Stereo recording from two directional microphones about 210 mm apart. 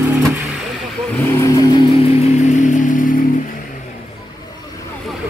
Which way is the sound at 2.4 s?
35° left (ahead or behind).